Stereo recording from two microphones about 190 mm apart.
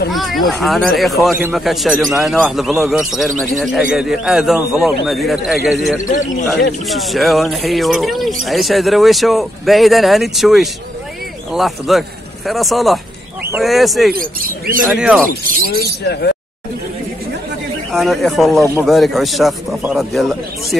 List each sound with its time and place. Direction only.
0.1 s speech: centre (ahead or behind)
6.0 s speech: 40° left (ahead or behind)
6.9 s speech: centre (ahead or behind)
14.1 s speech: 50° right (ahead or behind)
14.9 s speech: 5° right (ahead or behind)
17.9 s speech: centre (ahead or behind)